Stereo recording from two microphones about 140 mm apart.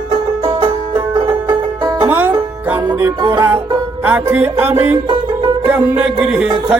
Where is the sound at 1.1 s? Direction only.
30° right (ahead or behind).